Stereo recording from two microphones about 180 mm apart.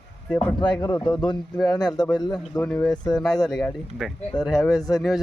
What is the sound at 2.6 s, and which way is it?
Speech, 10° left (ahead or behind).